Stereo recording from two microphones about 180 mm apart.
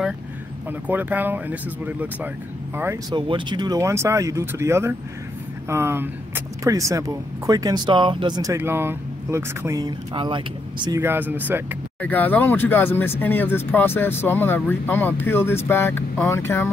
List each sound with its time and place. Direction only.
0.7 s speech: 10° right (ahead or behind)
3.2 s speech: 25° right (ahead or behind)
11.0 s speech: 10° right (ahead or behind)
12.0 s speech: 10° left (ahead or behind)